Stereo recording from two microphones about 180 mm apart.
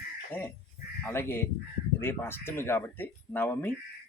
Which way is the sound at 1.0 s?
10° left (ahead or behind).